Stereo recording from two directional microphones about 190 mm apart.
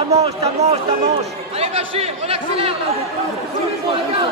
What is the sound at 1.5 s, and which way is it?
Chatter, 30° right (ahead or behind).